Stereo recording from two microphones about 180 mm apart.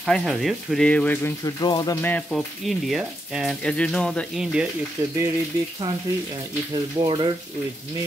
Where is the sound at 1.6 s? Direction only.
25° left (ahead or behind).